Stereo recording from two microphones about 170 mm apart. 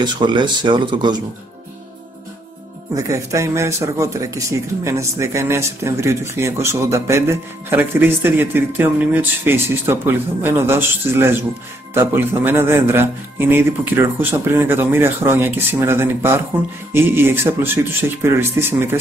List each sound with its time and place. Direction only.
0.0 s speech: 25° right (ahead or behind)
2.9 s speech: 20° right (ahead or behind)